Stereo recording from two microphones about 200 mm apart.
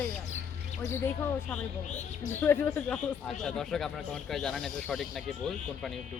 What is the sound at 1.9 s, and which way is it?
Speech, 35° left (ahead or behind).